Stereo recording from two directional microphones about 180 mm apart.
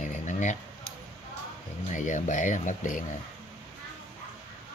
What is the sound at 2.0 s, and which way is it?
Speech, 45° left (ahead or behind).